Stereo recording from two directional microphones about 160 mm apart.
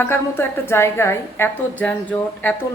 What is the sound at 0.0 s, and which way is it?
A woman's voice, 15° left (ahead or behind).